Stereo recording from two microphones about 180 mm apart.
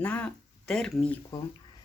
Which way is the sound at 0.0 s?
10° left (ahead or behind).